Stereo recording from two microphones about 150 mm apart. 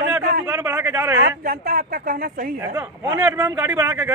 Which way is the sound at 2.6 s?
15° right (ahead or behind).